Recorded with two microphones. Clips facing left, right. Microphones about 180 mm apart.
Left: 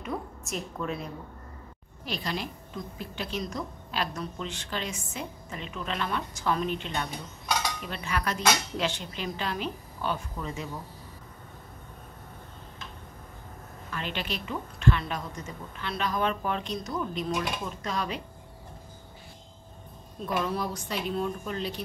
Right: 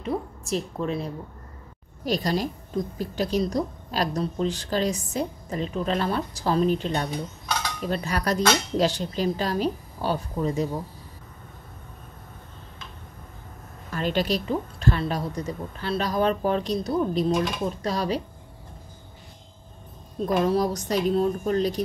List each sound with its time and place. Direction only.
0.0 s a woman's voice: 30° right (ahead or behind)
13.8 s a woman's voice: 40° right (ahead or behind)
20.2 s a woman's voice: 40° right (ahead or behind)